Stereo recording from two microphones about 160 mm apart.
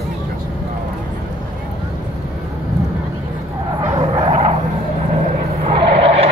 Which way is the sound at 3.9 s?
35° right (ahead or behind).